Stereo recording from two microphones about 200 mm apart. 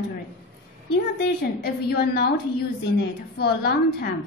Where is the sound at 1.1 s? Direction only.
55° left (ahead or behind).